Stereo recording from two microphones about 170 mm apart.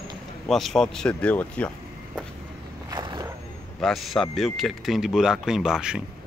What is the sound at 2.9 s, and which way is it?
Vehicle, 25° right (ahead or behind).